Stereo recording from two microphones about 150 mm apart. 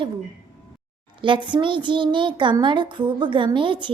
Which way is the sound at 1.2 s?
30° right (ahead or behind).